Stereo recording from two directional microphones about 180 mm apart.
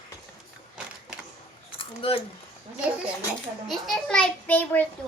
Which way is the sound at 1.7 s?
30° left (ahead or behind).